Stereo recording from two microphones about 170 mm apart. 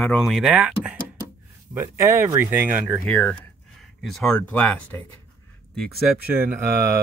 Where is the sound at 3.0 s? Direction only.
5° left (ahead or behind).